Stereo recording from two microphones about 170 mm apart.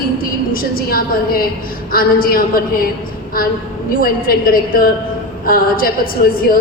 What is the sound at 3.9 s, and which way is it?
A woman's voice, 60° left (ahead or behind).